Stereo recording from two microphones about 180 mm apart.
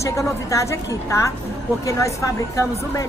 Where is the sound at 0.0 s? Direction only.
15° left (ahead or behind).